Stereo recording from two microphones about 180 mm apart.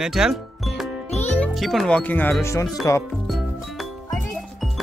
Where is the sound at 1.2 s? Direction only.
5° left (ahead or behind).